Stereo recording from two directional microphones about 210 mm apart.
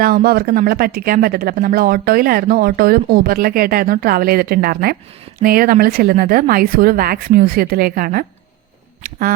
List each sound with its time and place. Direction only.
0.0 s speech: 45° right (ahead or behind)
9.0 s duck: 40° right (ahead or behind)